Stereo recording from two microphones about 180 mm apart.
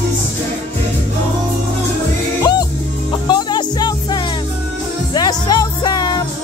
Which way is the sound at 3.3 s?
25° left (ahead or behind).